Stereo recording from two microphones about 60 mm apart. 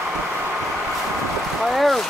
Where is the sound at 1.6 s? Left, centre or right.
Centre.